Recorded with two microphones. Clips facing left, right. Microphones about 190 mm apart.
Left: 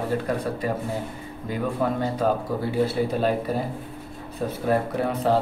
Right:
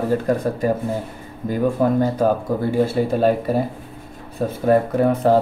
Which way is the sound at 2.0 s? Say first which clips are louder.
Right 5 dB; 45° right (ahead or behind).